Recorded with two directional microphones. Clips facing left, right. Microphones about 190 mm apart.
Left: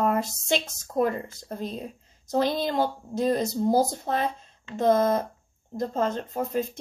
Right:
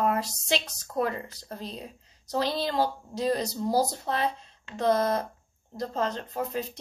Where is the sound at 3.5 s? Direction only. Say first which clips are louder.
Left 5 dB; 20° left (ahead or behind).